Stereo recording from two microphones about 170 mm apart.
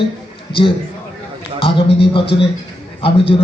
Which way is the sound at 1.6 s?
30° left (ahead or behind).